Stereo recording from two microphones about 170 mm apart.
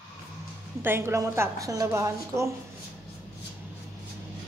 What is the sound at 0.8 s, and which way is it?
A woman's voice, 15° right (ahead or behind).